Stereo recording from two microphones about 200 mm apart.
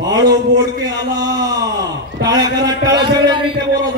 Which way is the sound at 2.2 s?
20° right (ahead or behind).